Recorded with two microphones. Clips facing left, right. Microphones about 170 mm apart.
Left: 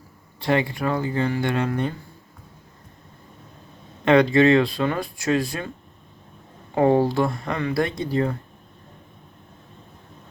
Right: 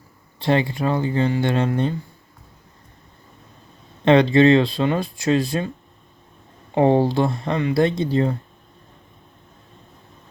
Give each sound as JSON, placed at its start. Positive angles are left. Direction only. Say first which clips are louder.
{"t": 0.3, "sound": "speech", "louder": "right 2 dB", "side_deg": -25}
{"t": 4.0, "sound": "speech", "louder": "right 2 dB", "side_deg": -25}
{"t": 6.7, "sound": "speech", "louder": "right 2 dB", "side_deg": -25}